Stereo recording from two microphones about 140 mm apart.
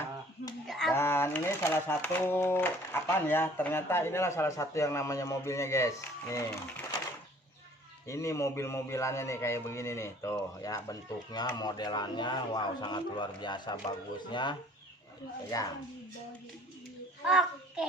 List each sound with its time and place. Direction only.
0.7 s a sound: centre (ahead or behind)
0.9 s speech: 15° left (ahead or behind)
8.0 s a man's voice: 20° left (ahead or behind)
15.5 s a man's voice: 25° left (ahead or behind)
17.2 s a child's voice: 5° right (ahead or behind)